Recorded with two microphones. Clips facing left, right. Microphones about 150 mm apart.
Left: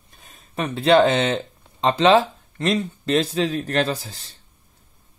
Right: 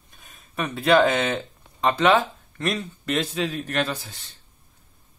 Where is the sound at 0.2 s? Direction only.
30° left (ahead or behind).